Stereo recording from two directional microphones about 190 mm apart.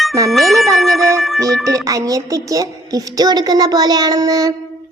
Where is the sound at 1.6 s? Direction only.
15° right (ahead or behind).